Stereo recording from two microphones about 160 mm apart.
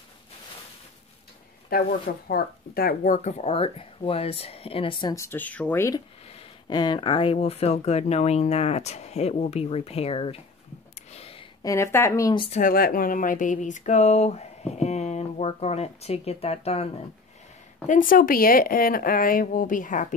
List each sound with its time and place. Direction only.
1.7 s speech: 70° left (ahead or behind); by 5.1 s 35° left (ahead or behind)
5.1 s speech: 15° left (ahead or behind)
6.7 s speech: 25° left (ahead or behind)
11.1 s a sound: 40° left (ahead or behind)
11.6 s speech: 20° left (ahead or behind)
12.4 s speech: 40° left (ahead or behind)
12.6 s speech: 65° left (ahead or behind); by 16.9 s 40° left (ahead or behind)
17.8 s speech: 55° left (ahead or behind)